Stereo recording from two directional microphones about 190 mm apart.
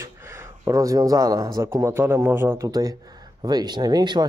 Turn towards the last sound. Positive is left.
turn(degrees=-20)  # may be behind; listen again after turning